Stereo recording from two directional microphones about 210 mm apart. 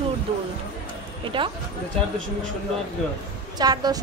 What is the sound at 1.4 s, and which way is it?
Speech, 25° right (ahead or behind).